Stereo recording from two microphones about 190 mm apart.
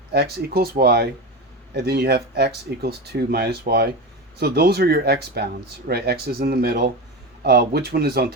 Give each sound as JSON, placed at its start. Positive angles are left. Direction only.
{"t": 0.1, "sound": "speech", "side_deg": -55}